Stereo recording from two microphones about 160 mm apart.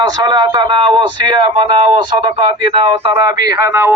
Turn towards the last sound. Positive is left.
turn(degrees=-15)  # may be behind; listen again after turning